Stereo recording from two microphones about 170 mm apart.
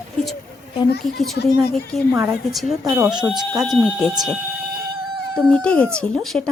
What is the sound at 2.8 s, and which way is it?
Speech, 20° right (ahead or behind).